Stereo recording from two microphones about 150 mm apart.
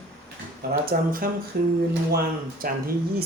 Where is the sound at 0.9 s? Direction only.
70° right (ahead or behind).